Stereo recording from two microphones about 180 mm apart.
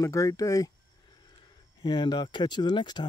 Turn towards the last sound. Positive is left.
turn(degrees=25)  # may be behind; listen again after turning